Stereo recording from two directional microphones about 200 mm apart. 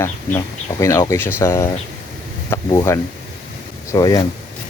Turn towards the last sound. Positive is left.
turn(degrees=20)  # may be behind; listen again after turning